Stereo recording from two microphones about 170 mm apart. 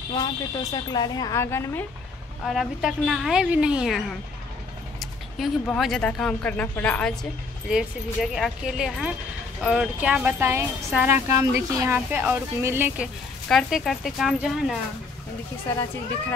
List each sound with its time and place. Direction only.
0.1 s a woman's voice: 25° left (ahead or behind)
2.4 s a woman's voice: centre (ahead or behind)
5.7 s a woman's voice: centre (ahead or behind)